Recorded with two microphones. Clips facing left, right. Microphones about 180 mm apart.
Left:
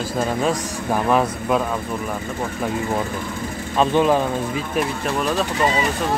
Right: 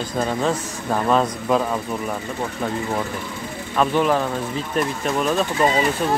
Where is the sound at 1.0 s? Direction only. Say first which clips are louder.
Right 1 dB; 10° left (ahead or behind).